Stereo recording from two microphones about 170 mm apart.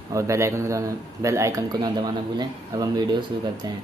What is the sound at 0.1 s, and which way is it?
Speech, 20° right (ahead or behind).